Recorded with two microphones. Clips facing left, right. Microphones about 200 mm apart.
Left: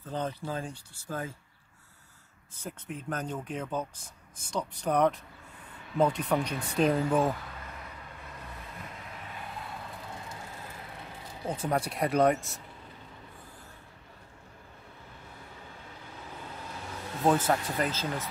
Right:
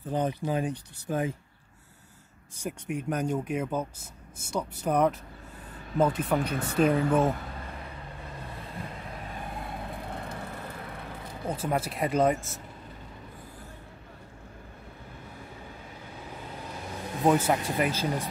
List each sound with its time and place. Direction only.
0.0 s speech: 15° right (ahead or behind)
2.5 s speech: 15° right (ahead or behind)
9.3 s vehicle: 50° right (ahead or behind)
11.5 s speech: 5° right (ahead or behind)
17.2 s speech: 10° right (ahead or behind)